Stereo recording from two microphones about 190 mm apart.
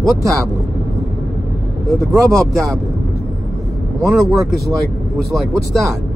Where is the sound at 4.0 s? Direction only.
Centre (ahead or behind).